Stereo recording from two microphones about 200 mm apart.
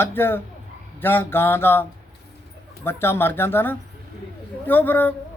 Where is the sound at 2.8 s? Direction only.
10° left (ahead or behind).